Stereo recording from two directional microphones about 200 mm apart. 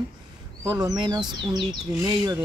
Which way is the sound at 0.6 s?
20° right (ahead or behind).